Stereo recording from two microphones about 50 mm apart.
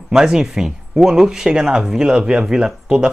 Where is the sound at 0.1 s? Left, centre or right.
Centre.